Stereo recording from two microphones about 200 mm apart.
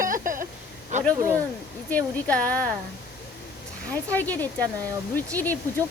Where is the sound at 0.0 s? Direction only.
40° right (ahead or behind).